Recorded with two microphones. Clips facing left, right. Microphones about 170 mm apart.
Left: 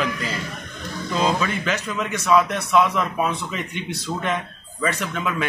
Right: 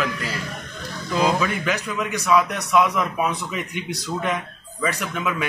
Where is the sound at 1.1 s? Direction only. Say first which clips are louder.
Right 1 dB; centre (ahead or behind).